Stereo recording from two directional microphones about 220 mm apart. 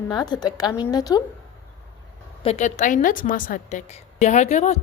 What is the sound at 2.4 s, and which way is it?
A woman's voice, 30° left (ahead or behind).